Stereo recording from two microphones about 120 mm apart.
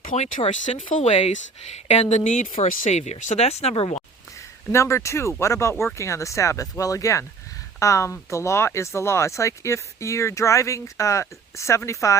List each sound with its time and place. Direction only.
0.1 s speech: 90° left; by 4.0 s 60° left (ahead or behind)
4.7 s speech: 25° left (ahead or behind)